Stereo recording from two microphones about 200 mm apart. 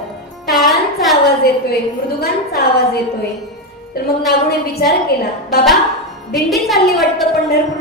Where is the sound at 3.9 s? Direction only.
50° left (ahead or behind).